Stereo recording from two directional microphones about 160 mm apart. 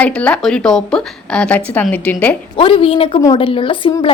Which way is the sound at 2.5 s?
35° left (ahead or behind).